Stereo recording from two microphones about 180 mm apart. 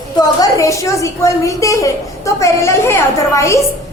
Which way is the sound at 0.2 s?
20° left (ahead or behind).